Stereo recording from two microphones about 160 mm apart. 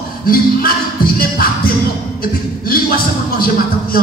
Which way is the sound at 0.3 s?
65° left (ahead or behind).